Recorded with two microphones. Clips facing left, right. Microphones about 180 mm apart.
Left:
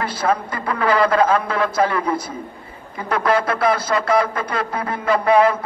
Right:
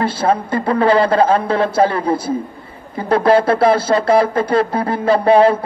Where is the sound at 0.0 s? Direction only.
30° right (ahead or behind).